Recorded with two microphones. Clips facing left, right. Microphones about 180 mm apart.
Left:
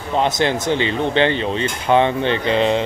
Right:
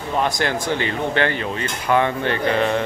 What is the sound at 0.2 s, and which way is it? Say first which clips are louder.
Speech: left 4 dB; 20° left (ahead or behind).